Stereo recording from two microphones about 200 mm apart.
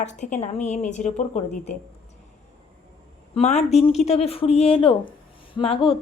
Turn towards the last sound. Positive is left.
turn(degrees=30)  # may be behind; listen again after turning